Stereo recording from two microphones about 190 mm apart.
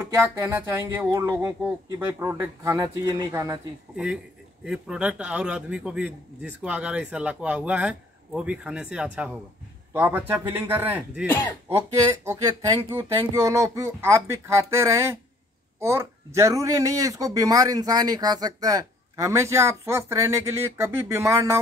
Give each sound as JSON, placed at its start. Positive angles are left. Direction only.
{"t": 0.0, "sound": "speech", "side_deg": -10}
{"t": 3.9, "sound": "a man's voice", "side_deg": -5}